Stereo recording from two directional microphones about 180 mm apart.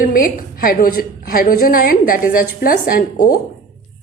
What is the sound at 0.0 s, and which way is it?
A woman's voice, 50° left (ahead or behind).